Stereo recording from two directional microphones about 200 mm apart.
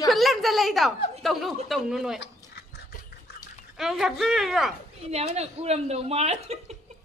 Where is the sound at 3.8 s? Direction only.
Centre (ahead or behind).